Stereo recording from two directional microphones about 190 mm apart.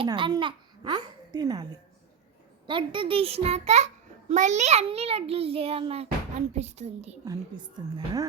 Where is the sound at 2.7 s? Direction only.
25° right (ahead or behind).